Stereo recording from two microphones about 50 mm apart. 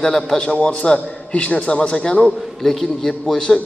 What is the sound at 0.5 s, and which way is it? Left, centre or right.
A man's voice, left.